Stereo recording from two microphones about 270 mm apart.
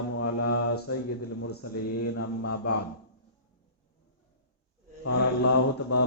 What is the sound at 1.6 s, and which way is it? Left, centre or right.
Mantra, left.